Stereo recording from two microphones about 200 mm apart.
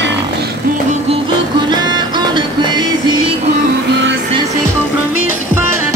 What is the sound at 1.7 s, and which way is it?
Music, 20° right (ahead or behind).